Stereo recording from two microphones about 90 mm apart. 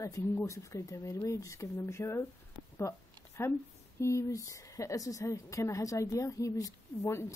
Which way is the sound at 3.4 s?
30° left (ahead or behind).